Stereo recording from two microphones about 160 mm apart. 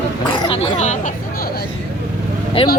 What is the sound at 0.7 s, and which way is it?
Speech, 50° left (ahead or behind).